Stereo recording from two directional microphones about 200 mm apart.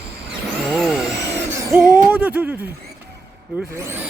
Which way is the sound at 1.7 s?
5° right (ahead or behind).